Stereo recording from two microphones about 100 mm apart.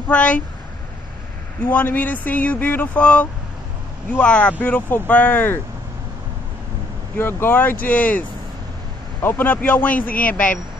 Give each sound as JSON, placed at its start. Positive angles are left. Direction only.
{"t": 0.1, "sound": "speech", "side_deg": 15}
{"t": 1.6, "sound": "speech", "side_deg": 15}
{"t": 7.2, "sound": "speech", "side_deg": 25}